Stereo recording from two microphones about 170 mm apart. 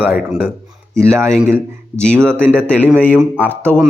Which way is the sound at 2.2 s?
10° right (ahead or behind).